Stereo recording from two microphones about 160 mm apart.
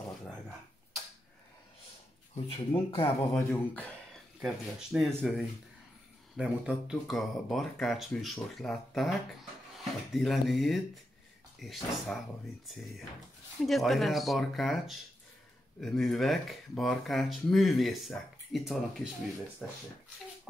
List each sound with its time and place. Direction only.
2.5 s speech: 35° left (ahead or behind)
3.3 s speech: 10° left (ahead or behind)
4.4 s speech: 5° right (ahead or behind)
13.7 s speech: centre (ahead or behind)